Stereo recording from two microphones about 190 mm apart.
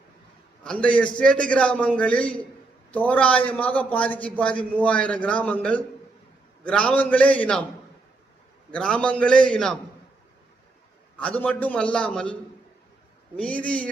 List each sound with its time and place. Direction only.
0.6 s a man's voice: 5° left (ahead or behind)
8.7 s a man's voice: 5° left (ahead or behind)
11.2 s a man's voice: 5° left (ahead or behind)